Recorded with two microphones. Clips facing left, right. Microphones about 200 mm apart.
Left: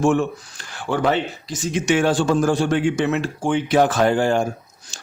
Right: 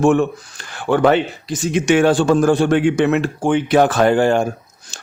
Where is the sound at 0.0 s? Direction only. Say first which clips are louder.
Right 4 dB; 60° right (ahead or behind).